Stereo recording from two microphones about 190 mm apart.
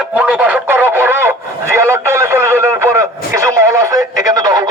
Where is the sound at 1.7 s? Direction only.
15° right (ahead or behind).